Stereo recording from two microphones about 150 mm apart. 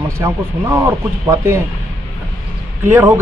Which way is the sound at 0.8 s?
15° right (ahead or behind).